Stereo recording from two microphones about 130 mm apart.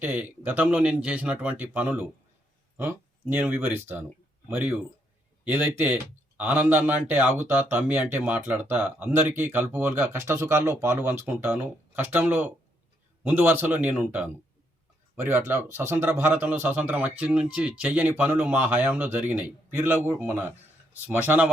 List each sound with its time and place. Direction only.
0.0 s speech: 15° right (ahead or behind)